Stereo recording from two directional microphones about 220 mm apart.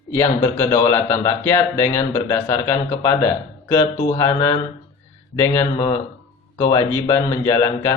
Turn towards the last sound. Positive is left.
turn(degrees=15)  # may be behind; listen again after turning